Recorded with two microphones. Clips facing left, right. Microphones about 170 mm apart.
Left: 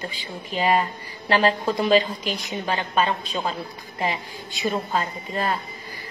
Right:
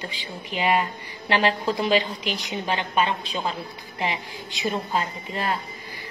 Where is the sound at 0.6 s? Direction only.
40° left (ahead or behind).